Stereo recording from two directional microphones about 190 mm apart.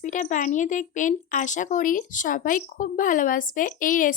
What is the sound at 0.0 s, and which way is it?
A woman's voice, 40° left (ahead or behind).